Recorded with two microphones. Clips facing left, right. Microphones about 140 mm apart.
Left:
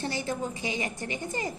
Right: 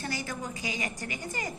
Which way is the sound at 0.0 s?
25° left (ahead or behind).